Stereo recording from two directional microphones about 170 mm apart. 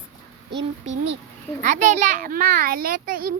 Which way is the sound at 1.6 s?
45° right (ahead or behind).